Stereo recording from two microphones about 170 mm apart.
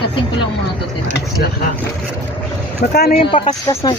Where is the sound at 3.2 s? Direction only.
30° left (ahead or behind).